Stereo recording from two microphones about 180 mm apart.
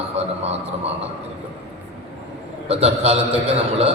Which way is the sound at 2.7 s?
35° right (ahead or behind).